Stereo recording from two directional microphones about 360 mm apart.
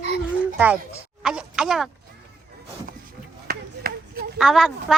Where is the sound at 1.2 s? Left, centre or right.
Centre.